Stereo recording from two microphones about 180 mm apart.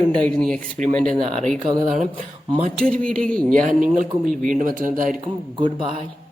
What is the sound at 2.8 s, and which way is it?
Speech, 5° left (ahead or behind).